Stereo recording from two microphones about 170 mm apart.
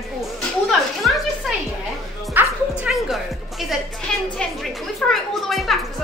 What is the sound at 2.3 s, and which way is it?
Music, 5° right (ahead or behind).